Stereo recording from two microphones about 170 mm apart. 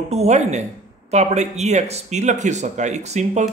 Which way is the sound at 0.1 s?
40° right (ahead or behind).